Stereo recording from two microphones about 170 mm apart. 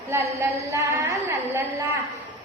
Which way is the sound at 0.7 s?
15° right (ahead or behind).